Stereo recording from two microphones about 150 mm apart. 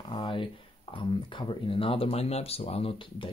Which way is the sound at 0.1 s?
35° left (ahead or behind).